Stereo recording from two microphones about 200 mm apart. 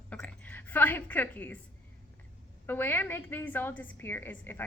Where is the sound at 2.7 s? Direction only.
10° left (ahead or behind).